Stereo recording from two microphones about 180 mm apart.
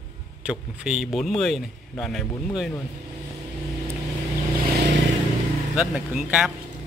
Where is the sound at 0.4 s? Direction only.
5° right (ahead or behind).